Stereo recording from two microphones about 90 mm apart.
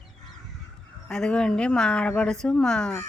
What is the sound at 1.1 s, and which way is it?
Speech, 10° left (ahead or behind).